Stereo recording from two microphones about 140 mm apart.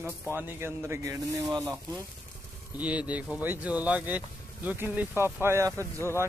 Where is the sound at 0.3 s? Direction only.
15° right (ahead or behind).